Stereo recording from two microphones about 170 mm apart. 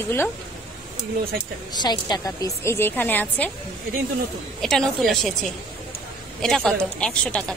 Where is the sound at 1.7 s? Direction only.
25° left (ahead or behind).